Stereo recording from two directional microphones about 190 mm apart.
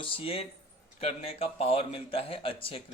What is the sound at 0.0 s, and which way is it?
A man's voice, 30° left (ahead or behind).